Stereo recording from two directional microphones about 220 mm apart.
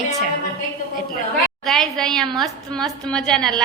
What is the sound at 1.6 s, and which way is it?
A woman's voice, centre (ahead or behind).